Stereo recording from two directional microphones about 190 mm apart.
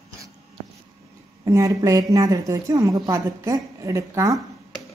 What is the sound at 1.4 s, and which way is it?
A woman's voice, 15° right (ahead or behind).